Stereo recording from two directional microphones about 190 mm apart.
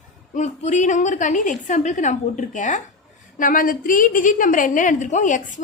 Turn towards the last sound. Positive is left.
turn(degrees=40)  # may be behind; listen again after turning